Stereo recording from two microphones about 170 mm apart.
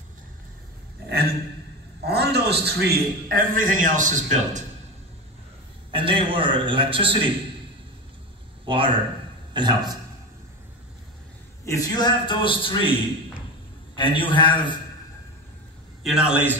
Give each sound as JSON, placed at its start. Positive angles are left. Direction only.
{"t": 1.0, "sound": "a sound", "side_deg": -70}
{"t": 2.0, "sound": "a man's voice", "side_deg": -75}
{"t": 5.9, "sound": "a man's voice", "side_deg": -30}
{"t": 8.6, "sound": "speech", "side_deg": -30}
{"t": 11.6, "sound": "a man's voice", "side_deg": 20}
{"t": 13.9, "sound": "a man's voice", "side_deg": 30}
{"t": 16.0, "sound": "a man's voice", "side_deg": -5}